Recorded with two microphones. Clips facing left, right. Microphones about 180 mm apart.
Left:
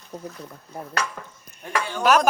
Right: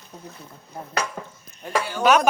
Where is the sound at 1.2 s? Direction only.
25° right (ahead or behind).